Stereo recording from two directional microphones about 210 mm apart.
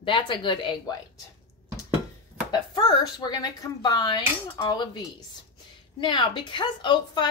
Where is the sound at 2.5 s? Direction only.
20° left (ahead or behind).